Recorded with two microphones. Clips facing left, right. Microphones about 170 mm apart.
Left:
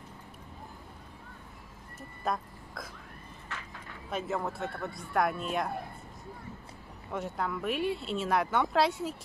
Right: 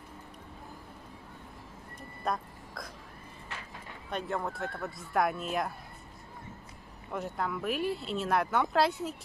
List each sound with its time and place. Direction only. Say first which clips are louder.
2.0 s a sound: even; centre (ahead or behind)
4.1 s speech: left 1 dB; centre (ahead or behind)
7.1 s speech: even; centre (ahead or behind)